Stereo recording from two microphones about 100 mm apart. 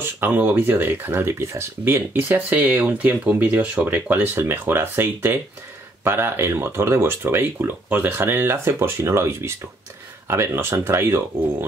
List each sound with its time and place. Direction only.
0.0 s speech: 20° right (ahead or behind)